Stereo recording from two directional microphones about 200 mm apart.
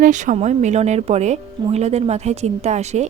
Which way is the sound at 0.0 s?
40° right (ahead or behind).